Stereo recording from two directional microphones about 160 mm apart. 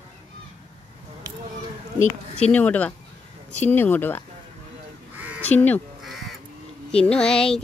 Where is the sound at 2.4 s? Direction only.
10° left (ahead or behind).